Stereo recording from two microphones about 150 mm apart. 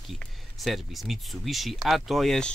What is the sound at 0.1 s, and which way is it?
Speech, centre (ahead or behind).